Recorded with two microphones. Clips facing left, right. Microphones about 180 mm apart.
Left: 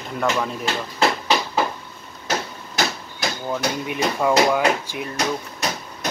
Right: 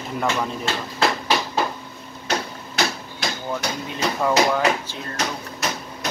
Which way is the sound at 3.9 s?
10° left (ahead or behind).